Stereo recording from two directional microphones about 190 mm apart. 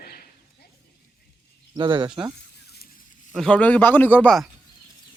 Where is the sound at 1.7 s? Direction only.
25° right (ahead or behind).